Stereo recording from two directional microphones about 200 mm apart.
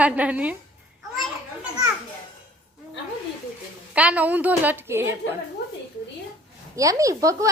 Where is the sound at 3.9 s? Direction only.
5° right (ahead or behind).